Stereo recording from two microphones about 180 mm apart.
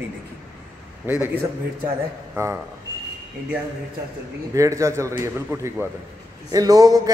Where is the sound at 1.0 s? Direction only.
10° right (ahead or behind).